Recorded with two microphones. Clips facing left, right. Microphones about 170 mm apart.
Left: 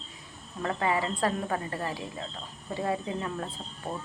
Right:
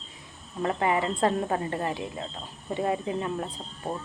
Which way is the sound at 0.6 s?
25° right (ahead or behind).